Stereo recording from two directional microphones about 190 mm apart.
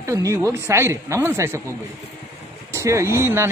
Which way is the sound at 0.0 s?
15° right (ahead or behind).